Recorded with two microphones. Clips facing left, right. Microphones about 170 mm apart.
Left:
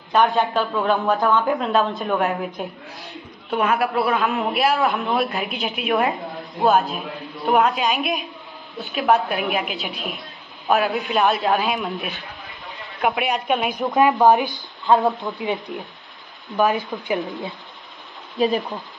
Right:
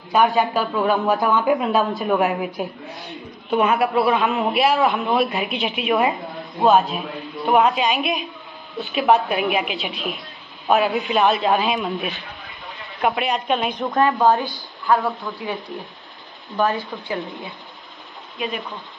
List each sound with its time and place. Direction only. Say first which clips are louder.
0.1 s a woman's voice: right 1 dB; 5° right (ahead or behind)
13.9 s speech: left 2 dB; 20° left (ahead or behind)
16.9 s speech: left 3 dB; 10° left (ahead or behind)
17.3 s speech: left 4 dB; 20° left (ahead or behind)